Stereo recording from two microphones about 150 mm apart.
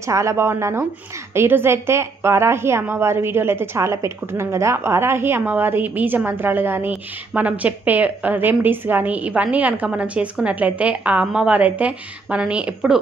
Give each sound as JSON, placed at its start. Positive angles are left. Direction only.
{"t": 0.0, "sound": "a woman's voice", "side_deg": -20}